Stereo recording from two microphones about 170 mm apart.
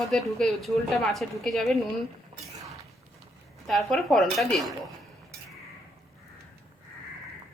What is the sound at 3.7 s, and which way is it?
Speech, centre (ahead or behind).